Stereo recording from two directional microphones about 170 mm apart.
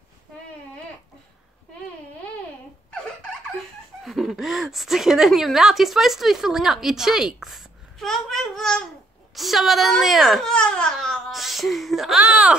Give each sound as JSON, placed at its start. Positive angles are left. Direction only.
{"t": 4.0, "sound": "a woman's voice", "side_deg": 0}